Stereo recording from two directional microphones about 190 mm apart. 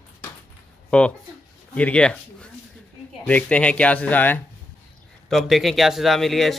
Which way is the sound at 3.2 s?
5° left (ahead or behind).